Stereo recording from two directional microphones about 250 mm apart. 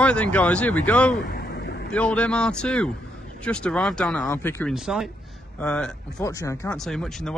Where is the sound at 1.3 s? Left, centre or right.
Left.